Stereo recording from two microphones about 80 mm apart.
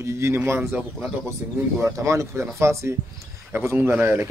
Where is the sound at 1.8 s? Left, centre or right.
Right.